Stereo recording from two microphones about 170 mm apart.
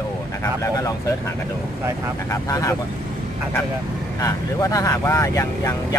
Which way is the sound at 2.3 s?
20° left (ahead or behind).